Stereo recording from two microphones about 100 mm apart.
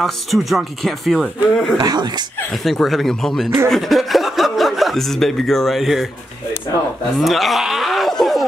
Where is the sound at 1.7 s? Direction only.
45° right (ahead or behind).